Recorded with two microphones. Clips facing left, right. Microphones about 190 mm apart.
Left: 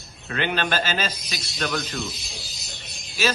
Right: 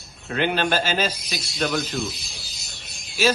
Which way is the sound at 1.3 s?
Centre (ahead or behind).